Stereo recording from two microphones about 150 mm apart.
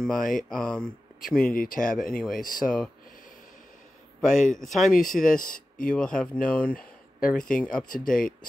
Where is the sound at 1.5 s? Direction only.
65° left (ahead or behind).